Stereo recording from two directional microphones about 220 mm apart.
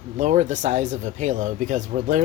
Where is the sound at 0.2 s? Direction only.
35° right (ahead or behind).